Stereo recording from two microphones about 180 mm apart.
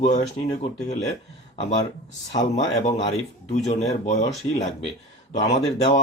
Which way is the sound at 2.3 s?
40° left (ahead or behind).